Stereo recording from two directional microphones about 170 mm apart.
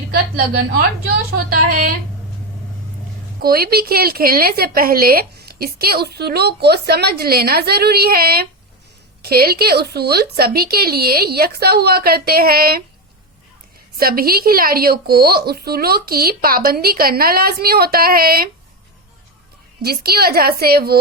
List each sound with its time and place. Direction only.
0.1 s a woman's voice: 65° right (ahead or behind)
3.4 s a woman's voice: 65° right (ahead or behind)
13.9 s a woman's voice: 60° right (ahead or behind)
19.8 s a woman's voice: 65° right (ahead or behind)